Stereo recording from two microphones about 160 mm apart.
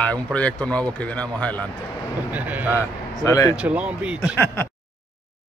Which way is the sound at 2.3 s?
10° right (ahead or behind).